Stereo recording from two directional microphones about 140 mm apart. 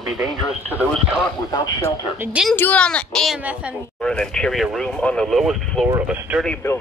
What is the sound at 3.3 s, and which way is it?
Speech, 10° right (ahead or behind).